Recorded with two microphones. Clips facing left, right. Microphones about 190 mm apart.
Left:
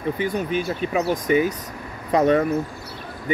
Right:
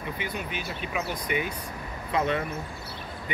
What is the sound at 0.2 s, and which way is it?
Speech, 45° left (ahead or behind).